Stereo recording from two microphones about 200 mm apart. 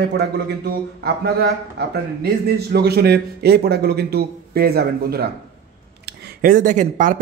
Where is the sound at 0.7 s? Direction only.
50° right (ahead or behind).